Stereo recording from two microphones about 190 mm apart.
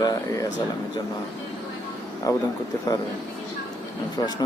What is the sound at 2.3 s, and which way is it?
Speech, 20° left (ahead or behind).